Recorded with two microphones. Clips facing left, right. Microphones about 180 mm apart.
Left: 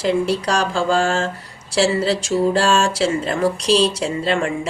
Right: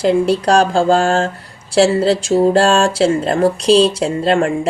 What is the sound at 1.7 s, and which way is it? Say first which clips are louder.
Speech: right 5 dB; 50° right (ahead or behind).